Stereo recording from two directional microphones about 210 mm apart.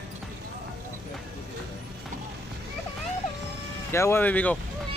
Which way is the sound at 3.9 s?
10° left (ahead or behind).